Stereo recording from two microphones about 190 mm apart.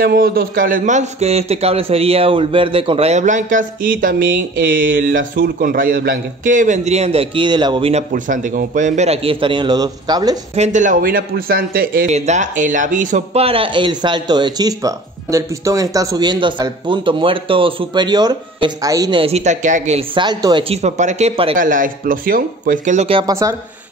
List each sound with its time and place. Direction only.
0.0 s a man's voice: 50° right (ahead or behind); by 8.0 s 25° right (ahead or behind)
8.1 s a man's voice: 45° right (ahead or behind); by 10.4 s 20° right (ahead or behind)
10.5 s a man's voice: 40° right (ahead or behind)
21.5 s speech: 45° right (ahead or behind); by 23.3 s 30° right (ahead or behind)